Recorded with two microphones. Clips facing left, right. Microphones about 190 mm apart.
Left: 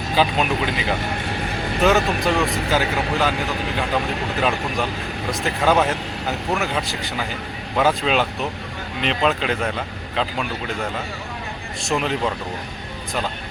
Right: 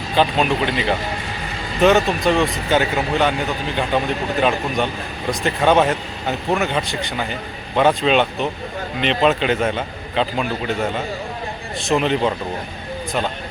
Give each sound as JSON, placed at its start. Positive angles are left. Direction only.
{"t": 0.2, "sound": "speech", "side_deg": 5}
{"t": 4.4, "sound": "speech", "side_deg": 0}
{"t": 11.8, "sound": "speech", "side_deg": 0}